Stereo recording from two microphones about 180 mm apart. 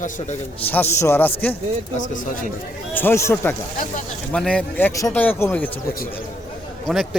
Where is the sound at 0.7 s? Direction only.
15° left (ahead or behind).